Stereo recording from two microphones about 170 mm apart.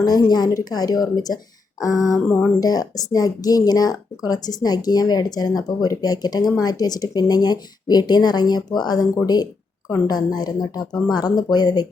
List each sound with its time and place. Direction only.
0.0 s speech: 25° left (ahead or behind)
2.1 s speech: 5° left (ahead or behind)
2.6 s speech: 20° left (ahead or behind)